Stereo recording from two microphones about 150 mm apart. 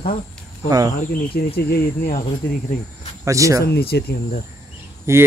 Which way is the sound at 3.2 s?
20° right (ahead or behind).